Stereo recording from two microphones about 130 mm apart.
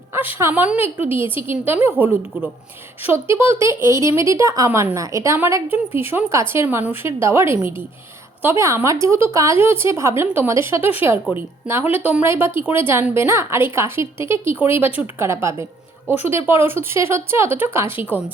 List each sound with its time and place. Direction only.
0.1 s a woman's voice: 15° right (ahead or behind)